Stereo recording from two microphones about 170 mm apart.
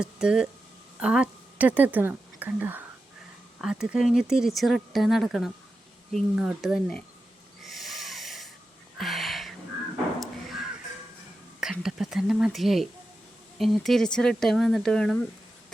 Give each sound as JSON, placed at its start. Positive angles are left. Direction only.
{"t": 0.0, "sound": "speech", "side_deg": -5}
{"t": 7.6, "sound": "snort", "side_deg": 0}
{"t": 9.0, "sound": "a sound", "side_deg": 0}
{"t": 11.6, "sound": "speech", "side_deg": -5}